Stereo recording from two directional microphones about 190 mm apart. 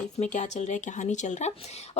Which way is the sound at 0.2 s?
40° left (ahead or behind).